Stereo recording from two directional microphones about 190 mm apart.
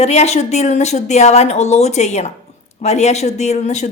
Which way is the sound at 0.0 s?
35° left (ahead or behind).